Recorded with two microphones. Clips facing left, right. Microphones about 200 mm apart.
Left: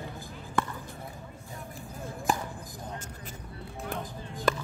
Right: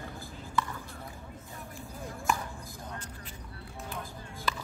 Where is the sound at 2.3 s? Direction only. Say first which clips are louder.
Left 2 dB; 35° left (ahead or behind).